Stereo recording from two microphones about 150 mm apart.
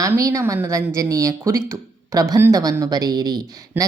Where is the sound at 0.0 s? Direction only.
20° right (ahead or behind).